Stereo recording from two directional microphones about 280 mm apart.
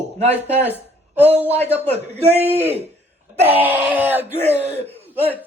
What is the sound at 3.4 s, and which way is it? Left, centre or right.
Speech, right.